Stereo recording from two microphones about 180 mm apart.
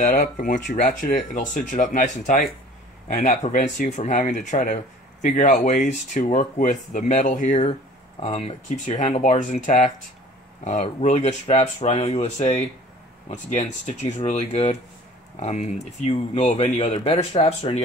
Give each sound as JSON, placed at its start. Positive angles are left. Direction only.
{"t": 0.0, "sound": "speech", "side_deg": 50}
{"t": 8.2, "sound": "speech", "side_deg": 35}